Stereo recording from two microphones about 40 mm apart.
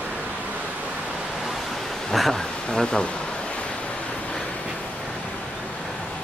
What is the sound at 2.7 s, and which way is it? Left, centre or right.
Speech, centre.